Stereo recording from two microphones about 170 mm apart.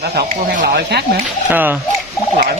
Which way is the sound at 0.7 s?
70° right (ahead or behind).